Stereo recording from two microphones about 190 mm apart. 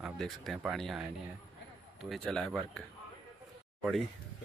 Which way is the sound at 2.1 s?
5° left (ahead or behind).